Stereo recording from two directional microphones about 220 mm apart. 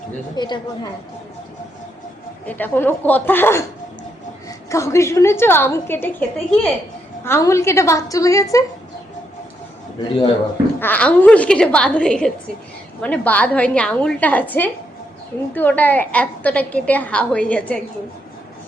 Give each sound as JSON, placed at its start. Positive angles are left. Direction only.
{"t": 0.3, "sound": "a woman's voice", "side_deg": 20}
{"t": 2.5, "sound": "a woman's voice", "side_deg": 10}
{"t": 10.8, "sound": "a woman's voice", "side_deg": 10}